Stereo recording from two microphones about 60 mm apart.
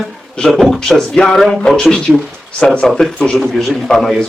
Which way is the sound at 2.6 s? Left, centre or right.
Centre.